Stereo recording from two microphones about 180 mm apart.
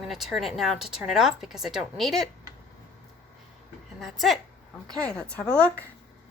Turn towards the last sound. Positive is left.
turn(degrees=5)  # may be behind; listen again after turning